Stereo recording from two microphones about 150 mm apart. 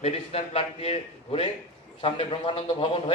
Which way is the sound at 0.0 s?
45° left (ahead or behind).